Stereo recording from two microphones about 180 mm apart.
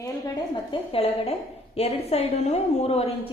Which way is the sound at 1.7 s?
35° left (ahead or behind).